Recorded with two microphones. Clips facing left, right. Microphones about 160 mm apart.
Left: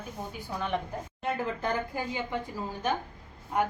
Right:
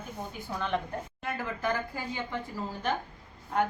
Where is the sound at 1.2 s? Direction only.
25° left (ahead or behind).